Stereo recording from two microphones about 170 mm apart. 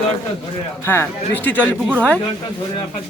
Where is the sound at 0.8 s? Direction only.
15° left (ahead or behind).